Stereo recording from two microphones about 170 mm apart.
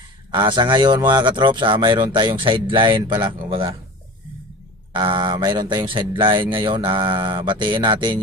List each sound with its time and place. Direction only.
0.3 s speech: 25° right (ahead or behind)
4.9 s speech: 25° right (ahead or behind)